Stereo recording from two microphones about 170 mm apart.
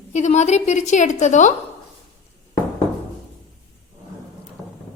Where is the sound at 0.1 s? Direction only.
45° left (ahead or behind).